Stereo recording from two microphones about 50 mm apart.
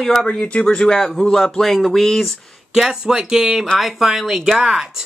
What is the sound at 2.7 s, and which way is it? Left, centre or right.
Speech, centre.